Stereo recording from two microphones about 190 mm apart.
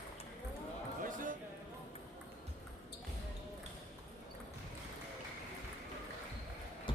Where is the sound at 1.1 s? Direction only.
45° right (ahead or behind).